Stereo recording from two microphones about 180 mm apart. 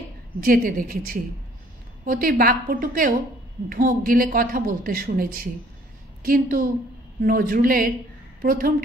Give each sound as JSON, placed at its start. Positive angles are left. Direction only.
{"t": 0.4, "sound": "a man's voice", "side_deg": -50}